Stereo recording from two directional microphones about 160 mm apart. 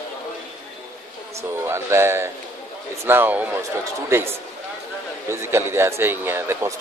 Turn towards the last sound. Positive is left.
turn(degrees=-15)  # may be behind; listen again after turning